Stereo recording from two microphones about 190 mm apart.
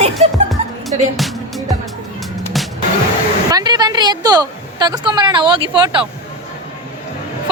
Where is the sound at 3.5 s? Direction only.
20° right (ahead or behind).